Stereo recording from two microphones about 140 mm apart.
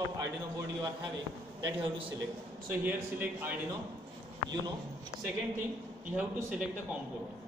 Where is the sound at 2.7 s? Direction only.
15° right (ahead or behind).